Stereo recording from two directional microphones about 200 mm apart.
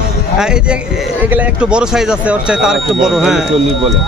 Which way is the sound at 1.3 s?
5° right (ahead or behind).